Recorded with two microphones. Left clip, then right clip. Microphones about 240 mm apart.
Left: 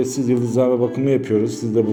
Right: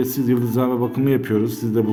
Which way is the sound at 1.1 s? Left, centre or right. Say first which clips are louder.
Left 2 dB; right.